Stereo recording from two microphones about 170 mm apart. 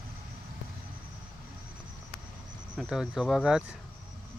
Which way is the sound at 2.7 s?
Centre (ahead or behind).